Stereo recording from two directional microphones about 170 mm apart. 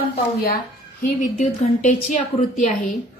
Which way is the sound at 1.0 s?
45° left (ahead or behind).